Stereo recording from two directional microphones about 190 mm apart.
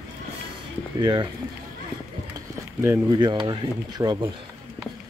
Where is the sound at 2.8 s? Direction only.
10° right (ahead or behind).